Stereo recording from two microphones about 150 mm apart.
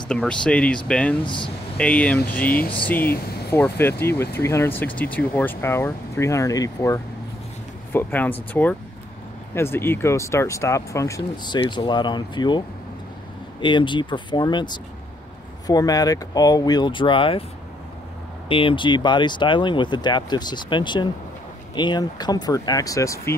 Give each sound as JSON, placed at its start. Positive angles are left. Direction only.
{"t": 0.1, "sound": "speech", "side_deg": 5}
{"t": 1.2, "sound": "speech", "side_deg": 30}
{"t": 1.8, "sound": "speech", "side_deg": 5}
{"t": 9.5, "sound": "speech", "side_deg": 15}
{"t": 18.5, "sound": "speech", "side_deg": 35}